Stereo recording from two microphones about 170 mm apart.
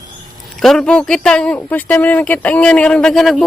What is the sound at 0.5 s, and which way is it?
A man's voice, centre (ahead or behind).